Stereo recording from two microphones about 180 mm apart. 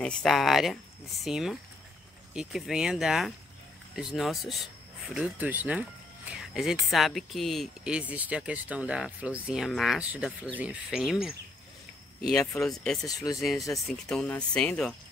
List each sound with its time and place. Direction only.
0.2 s speech: centre (ahead or behind)
13.0 s speech: 20° left (ahead or behind)
14.0 s speech: 5° left (ahead or behind)